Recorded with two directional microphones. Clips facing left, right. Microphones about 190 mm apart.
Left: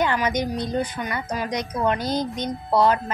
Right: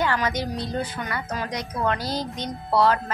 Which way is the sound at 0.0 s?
15° left (ahead or behind).